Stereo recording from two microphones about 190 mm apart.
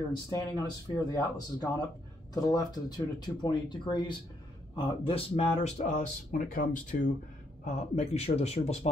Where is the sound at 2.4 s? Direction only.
20° left (ahead or behind).